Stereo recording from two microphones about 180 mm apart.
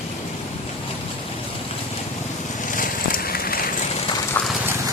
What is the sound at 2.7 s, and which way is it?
Vehicle, 50° left (ahead or behind).